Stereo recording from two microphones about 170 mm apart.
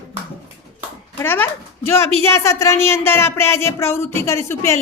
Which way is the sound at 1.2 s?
10° left (ahead or behind).